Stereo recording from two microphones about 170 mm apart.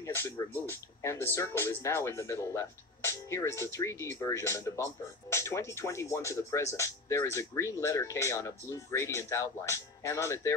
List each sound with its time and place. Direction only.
0.0 s speech: 15° left (ahead or behind)